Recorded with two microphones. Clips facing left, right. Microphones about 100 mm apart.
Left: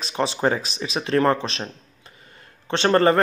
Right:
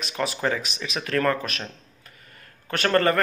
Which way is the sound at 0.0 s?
30° left (ahead or behind).